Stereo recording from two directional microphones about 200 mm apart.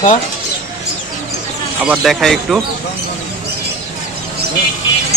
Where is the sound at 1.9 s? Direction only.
Centre (ahead or behind).